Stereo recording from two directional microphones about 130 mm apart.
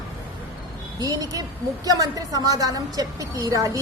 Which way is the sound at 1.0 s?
30° right (ahead or behind).